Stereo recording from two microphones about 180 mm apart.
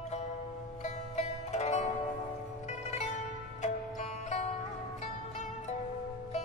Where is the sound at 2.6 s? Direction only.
40° left (ahead or behind).